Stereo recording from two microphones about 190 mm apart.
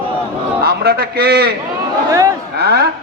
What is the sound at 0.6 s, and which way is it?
Speech, 55° right (ahead or behind).